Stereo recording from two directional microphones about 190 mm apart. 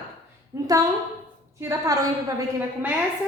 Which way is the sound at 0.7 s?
20° right (ahead or behind).